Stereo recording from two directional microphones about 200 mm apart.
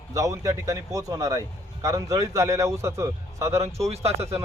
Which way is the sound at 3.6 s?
30° right (ahead or behind).